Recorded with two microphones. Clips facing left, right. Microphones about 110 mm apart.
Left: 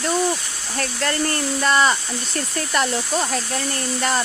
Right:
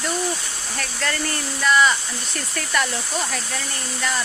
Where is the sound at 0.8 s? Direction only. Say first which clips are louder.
Left 4 dB; 30° left (ahead or behind).